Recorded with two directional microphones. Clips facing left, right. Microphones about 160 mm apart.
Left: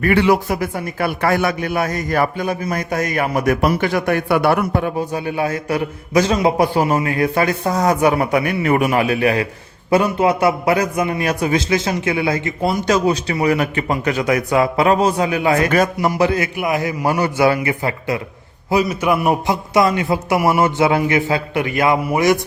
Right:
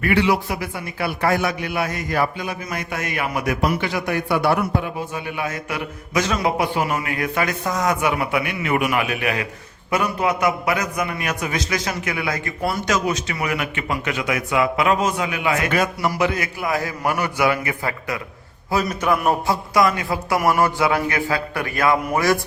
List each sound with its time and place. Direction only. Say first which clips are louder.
0.0 s a man's voice: left 4 dB; 50° left (ahead or behind)
1.2 s a man's voice: left 2 dB; 60° left (ahead or behind)
5.1 s a man's voice: left 6 dB; 35° left (ahead or behind)
16.6 s a man's voice: left 4 dB; 20° left (ahead or behind)
17.2 s a man's voice: left 5 dB; 30° left (ahead or behind)
18.7 s a man's voice: left 4 dB; 10° left (ahead or behind)
19.7 s a man's voice: left 4 dB; 25° left (ahead or behind)